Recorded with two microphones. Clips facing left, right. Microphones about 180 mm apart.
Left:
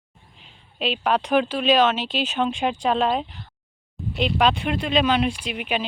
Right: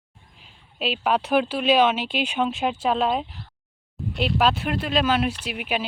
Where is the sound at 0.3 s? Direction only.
5° right (ahead or behind).